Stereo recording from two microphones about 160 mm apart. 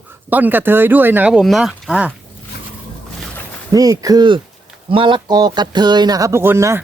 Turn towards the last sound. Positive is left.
turn(degrees=-15)  # may be behind; listen again after turning